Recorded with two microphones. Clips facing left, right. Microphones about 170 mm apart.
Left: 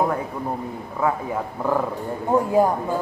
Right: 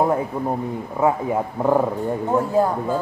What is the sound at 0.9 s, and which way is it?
Speech, 25° right (ahead or behind).